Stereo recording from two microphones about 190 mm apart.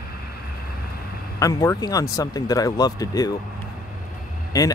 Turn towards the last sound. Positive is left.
turn(degrees=20)  # may be behind; listen again after turning